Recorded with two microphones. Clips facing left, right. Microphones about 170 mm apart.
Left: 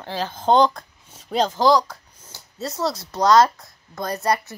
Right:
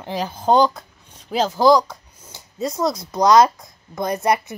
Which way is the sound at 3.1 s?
20° right (ahead or behind).